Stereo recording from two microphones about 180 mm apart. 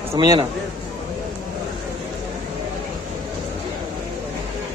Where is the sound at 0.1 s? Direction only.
25° right (ahead or behind).